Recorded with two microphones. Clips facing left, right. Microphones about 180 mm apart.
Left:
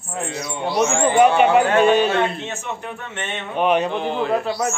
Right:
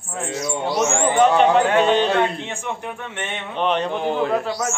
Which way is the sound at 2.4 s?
15° right (ahead or behind).